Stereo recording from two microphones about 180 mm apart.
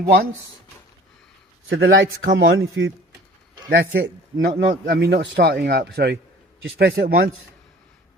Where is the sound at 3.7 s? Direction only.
65° right (ahead or behind).